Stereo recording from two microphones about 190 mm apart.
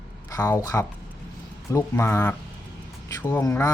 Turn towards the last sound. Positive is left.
turn(degrees=20)  # may be behind; listen again after turning